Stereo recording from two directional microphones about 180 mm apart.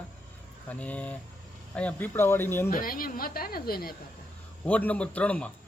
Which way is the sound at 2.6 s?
50° left (ahead or behind).